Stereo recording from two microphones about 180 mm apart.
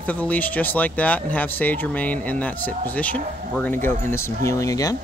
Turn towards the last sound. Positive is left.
turn(degrees=20)  # may be behind; listen again after turning